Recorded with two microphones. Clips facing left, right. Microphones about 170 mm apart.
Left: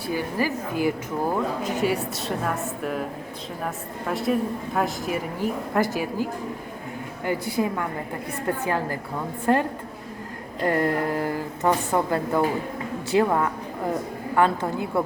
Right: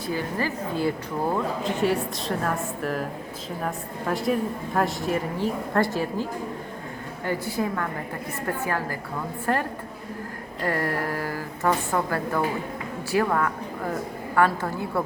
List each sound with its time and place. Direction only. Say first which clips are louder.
0.1 s a woman's voice: left 2 dB; 10° left (ahead or behind)
1.8 s a woman's voice: right 2 dB; centre (ahead or behind)
7.3 s a woman's voice: left 2 dB; 15° left (ahead or behind)